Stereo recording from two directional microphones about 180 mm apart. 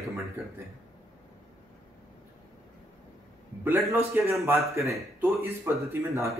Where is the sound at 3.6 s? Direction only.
10° right (ahead or behind).